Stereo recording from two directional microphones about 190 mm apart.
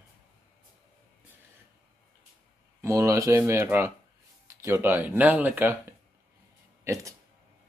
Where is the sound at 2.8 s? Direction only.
15° right (ahead or behind).